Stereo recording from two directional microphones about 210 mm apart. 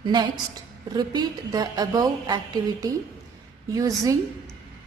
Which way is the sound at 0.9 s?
20° right (ahead or behind).